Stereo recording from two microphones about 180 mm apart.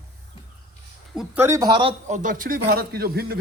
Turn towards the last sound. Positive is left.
turn(degrees=-60)  # may be behind; listen again after turning